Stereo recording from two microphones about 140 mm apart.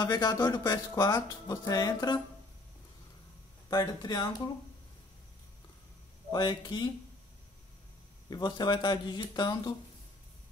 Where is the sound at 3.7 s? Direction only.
25° left (ahead or behind).